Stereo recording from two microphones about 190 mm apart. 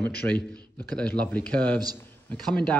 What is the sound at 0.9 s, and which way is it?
Speech, 10° left (ahead or behind).